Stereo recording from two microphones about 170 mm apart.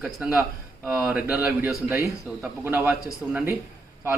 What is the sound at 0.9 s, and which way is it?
A man's voice, 10° right (ahead or behind).